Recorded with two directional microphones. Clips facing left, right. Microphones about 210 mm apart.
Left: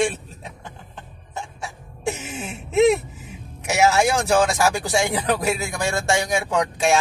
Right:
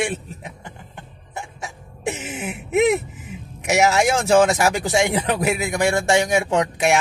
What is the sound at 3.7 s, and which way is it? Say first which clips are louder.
Speech: right 1 dB; 20° right (ahead or behind).